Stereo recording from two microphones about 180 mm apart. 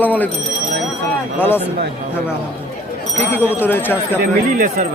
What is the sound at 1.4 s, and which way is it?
Speech, 10° left (ahead or behind).